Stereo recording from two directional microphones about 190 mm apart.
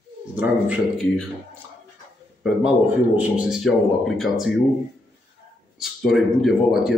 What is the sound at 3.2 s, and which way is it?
A man's voice, 5° right (ahead or behind).